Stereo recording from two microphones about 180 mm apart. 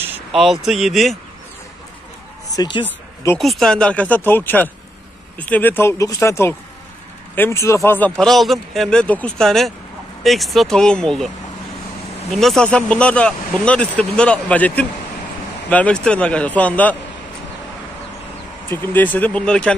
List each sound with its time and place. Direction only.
0.0 s a sound: 10° right (ahead or behind)
0.4 s speech: centre (ahead or behind)
2.5 s speech: 20° left (ahead or behind)
3.3 s speech: centre (ahead or behind)
12.3 s speech: centre (ahead or behind)
18.7 s speech: 10° left (ahead or behind)